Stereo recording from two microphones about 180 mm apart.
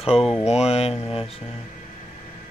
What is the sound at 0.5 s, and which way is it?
Speech, 35° left (ahead or behind).